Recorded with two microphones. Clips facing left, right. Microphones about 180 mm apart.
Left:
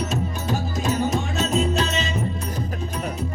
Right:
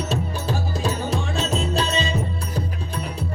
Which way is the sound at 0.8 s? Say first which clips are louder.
Left 3 dB; 30° right (ahead or behind).